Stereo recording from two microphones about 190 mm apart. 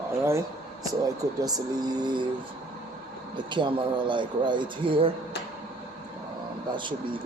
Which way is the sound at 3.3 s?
25° right (ahead or behind).